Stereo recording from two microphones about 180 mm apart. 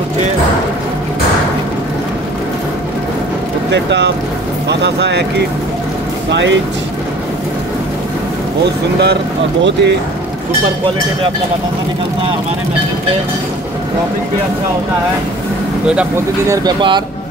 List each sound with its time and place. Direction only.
3.7 s speech: 75° right (ahead or behind)
6.3 s speech: 85° right
9.0 s speech: 75° right (ahead or behind)
16.4 s speech: 25° right (ahead or behind)